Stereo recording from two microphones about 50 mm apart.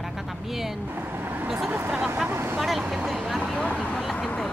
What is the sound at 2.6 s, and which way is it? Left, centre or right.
Speech, centre.